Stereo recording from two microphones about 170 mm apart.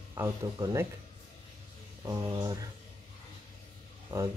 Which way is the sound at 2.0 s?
20° right (ahead or behind).